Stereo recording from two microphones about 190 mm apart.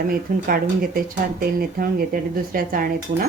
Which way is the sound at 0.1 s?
50° right (ahead or behind).